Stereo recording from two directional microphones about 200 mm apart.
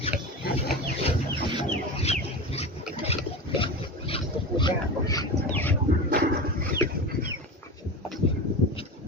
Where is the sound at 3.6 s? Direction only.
25° left (ahead or behind); by 5.7 s 10° left (ahead or behind).